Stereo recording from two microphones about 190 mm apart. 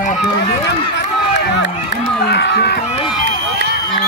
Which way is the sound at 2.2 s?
60° left (ahead or behind).